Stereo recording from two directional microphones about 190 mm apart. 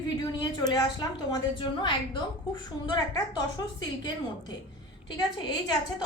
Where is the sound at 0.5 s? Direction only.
20° left (ahead or behind).